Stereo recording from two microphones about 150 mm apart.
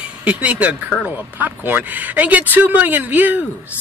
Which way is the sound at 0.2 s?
10° right (ahead or behind).